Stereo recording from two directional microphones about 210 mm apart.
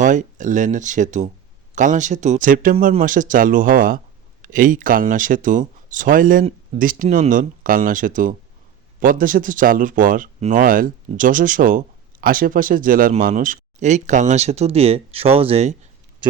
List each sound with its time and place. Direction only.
0.0 s speech: 35° right (ahead or behind)